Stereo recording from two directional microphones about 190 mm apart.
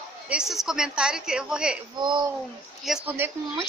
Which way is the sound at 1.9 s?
25° right (ahead or behind).